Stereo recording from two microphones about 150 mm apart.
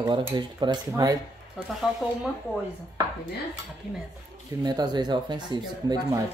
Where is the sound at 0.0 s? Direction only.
30° right (ahead or behind).